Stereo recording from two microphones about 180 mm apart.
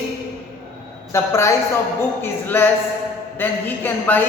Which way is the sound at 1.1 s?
15° left (ahead or behind).